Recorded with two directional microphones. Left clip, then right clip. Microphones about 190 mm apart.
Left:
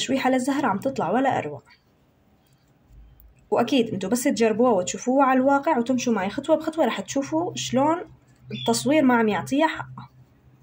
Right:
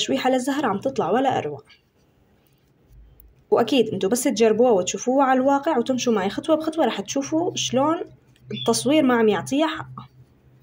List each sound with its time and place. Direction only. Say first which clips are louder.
0.0 s speech: right 1 dB; 20° right (ahead or behind)
3.4 s speech: right 3 dB; 20° right (ahead or behind)